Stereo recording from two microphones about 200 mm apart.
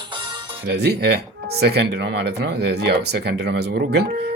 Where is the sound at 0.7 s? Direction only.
55° right (ahead or behind).